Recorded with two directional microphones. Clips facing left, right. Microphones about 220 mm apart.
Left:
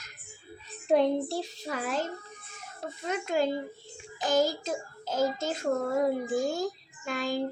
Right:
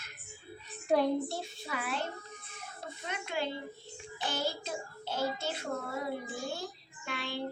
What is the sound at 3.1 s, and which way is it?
Speech, 45° left (ahead or behind).